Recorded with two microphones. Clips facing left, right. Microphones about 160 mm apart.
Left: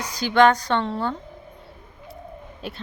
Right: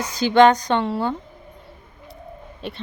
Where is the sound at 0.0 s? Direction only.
25° right (ahead or behind).